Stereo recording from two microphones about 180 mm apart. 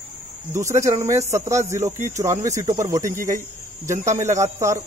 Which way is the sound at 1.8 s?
40° right (ahead or behind).